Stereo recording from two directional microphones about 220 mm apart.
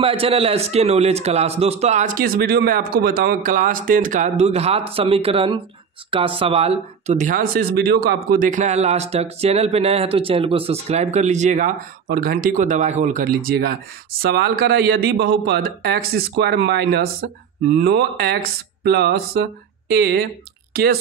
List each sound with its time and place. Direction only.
0.0 s a man's voice: 25° right (ahead or behind); by 21.0 s 45° right (ahead or behind)